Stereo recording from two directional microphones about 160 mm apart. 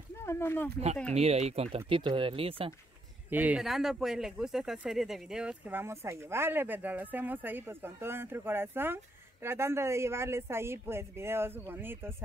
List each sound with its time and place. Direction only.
0.1 s speech: 15° left (ahead or behind)
1.1 s speech: 40° right (ahead or behind)
3.3 s speech: 10° right (ahead or behind)